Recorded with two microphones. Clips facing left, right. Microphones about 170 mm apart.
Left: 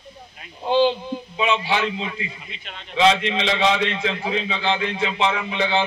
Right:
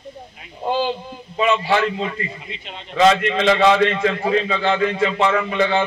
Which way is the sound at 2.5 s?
25° right (ahead or behind).